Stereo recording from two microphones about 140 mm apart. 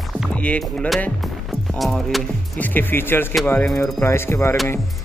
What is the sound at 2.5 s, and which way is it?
Speech, 15° left (ahead or behind).